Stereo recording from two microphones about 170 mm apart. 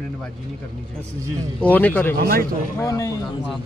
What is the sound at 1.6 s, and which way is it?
Speech, 10° left (ahead or behind).